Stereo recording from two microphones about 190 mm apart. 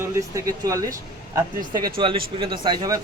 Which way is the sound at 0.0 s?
15° right (ahead or behind).